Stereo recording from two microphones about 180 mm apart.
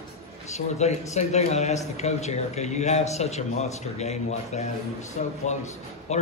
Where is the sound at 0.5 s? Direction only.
40° left (ahead or behind).